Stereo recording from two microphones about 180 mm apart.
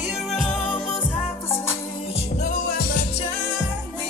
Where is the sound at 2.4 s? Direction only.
50° left (ahead or behind).